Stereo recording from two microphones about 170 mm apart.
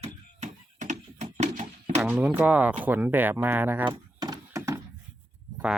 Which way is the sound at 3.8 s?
25° right (ahead or behind).